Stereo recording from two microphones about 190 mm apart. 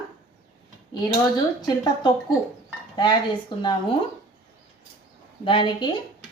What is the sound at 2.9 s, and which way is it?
Speech, 25° left (ahead or behind).